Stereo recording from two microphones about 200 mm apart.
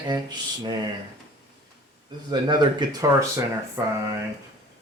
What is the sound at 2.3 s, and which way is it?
Speech, 20° right (ahead or behind).